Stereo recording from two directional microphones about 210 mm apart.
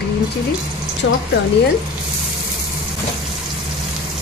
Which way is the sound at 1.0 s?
65° left (ahead or behind).